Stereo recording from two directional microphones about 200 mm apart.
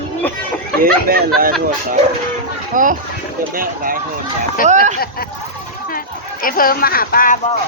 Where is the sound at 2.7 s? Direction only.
40° right (ahead or behind).